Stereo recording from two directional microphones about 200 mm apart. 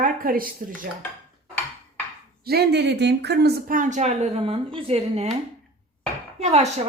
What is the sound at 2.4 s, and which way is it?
Speech, 55° right (ahead or behind).